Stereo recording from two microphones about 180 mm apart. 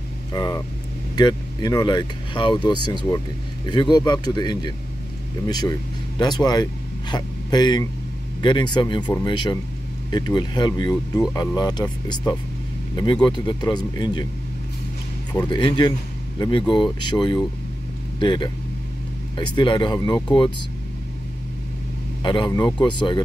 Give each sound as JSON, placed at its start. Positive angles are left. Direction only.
{"t": 0.3, "sound": "speech", "side_deg": 20}
{"t": 15.3, "sound": "speech", "side_deg": 25}
{"t": 22.2, "sound": "speech", "side_deg": 25}